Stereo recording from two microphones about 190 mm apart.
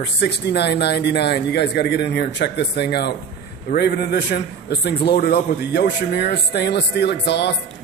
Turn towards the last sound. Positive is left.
turn(degrees=65)  # may be behind; listen again after turning